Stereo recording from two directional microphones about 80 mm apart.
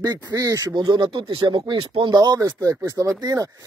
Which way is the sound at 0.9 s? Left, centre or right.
Right.